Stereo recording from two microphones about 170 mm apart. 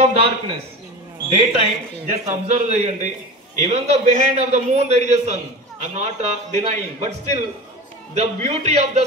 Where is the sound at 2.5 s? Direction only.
45° right (ahead or behind).